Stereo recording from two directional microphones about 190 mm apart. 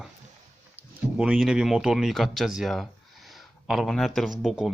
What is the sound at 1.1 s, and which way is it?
Speech, centre (ahead or behind).